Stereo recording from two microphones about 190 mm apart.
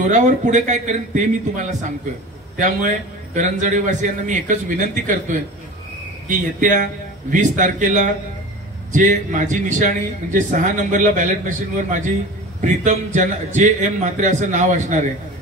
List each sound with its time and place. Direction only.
0.0 s a man's voice: 40° right (ahead or behind)